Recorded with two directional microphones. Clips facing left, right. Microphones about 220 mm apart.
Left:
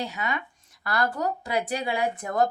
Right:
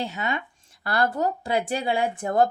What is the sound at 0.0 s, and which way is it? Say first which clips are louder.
Speech: right 2 dB; 25° right (ahead or behind).